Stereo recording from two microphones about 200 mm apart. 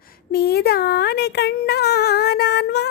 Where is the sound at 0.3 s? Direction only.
50° left (ahead or behind).